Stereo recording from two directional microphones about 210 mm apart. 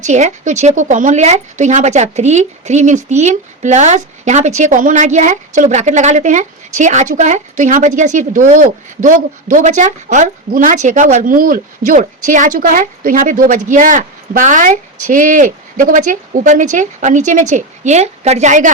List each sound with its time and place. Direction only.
0.0 s a woman's voice: 35° right (ahead or behind)